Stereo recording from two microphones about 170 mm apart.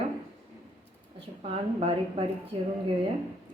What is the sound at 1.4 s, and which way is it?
Speech, 35° right (ahead or behind).